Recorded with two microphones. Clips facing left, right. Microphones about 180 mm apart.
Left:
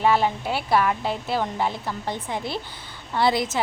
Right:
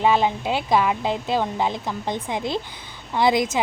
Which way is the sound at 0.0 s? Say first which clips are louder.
Right 1 dB; 15° right (ahead or behind).